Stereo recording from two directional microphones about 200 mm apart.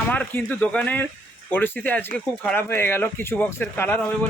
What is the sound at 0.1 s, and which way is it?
Speech, 5° left (ahead or behind).